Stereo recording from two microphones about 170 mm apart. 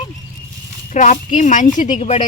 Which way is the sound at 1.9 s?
40° left (ahead or behind).